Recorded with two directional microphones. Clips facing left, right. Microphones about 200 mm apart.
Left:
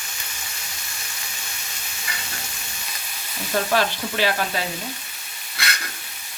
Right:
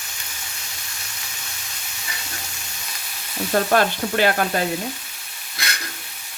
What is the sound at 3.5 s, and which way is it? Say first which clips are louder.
Frying: right 3 dB; 50° right (ahead or behind).